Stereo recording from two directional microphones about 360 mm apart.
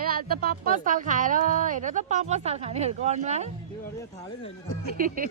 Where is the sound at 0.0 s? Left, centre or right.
Right.